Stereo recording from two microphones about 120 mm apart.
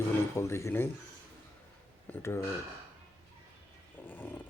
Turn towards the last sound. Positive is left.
turn(degrees=15)  # may be behind; listen again after turning